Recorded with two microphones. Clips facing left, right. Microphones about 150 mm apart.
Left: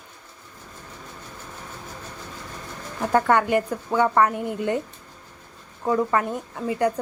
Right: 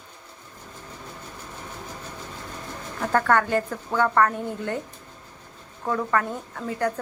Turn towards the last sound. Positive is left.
turn(degrees=15)  # may be behind; listen again after turning